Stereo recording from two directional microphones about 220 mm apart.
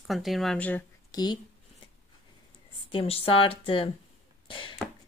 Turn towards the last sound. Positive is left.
turn(degrees=20)  # may be behind; listen again after turning